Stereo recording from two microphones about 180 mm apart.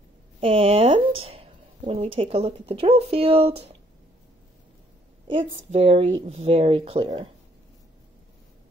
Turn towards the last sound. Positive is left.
turn(degrees=-35)  # may be behind; listen again after turning